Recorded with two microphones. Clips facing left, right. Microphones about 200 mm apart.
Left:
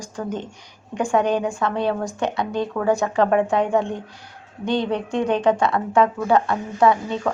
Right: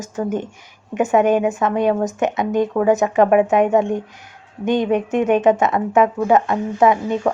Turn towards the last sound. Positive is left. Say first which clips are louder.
# right 3 dB
turn(degrees=-15)  # may be behind; listen again after turning